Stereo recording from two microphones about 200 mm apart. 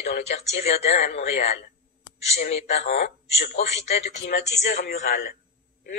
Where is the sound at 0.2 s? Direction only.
35° left (ahead or behind).